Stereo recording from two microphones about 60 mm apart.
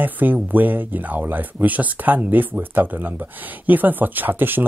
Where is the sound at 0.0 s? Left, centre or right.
Right.